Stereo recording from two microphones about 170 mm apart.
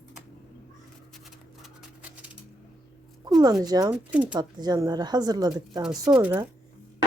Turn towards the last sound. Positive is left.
turn(degrees=-10)  # may be behind; listen again after turning